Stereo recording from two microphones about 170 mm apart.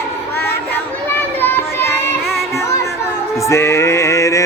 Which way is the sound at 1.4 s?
10° left (ahead or behind).